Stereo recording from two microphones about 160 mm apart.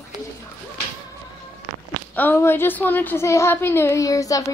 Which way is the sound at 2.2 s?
15° left (ahead or behind).